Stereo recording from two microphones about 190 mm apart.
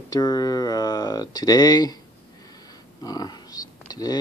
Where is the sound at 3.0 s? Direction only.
20° left (ahead or behind).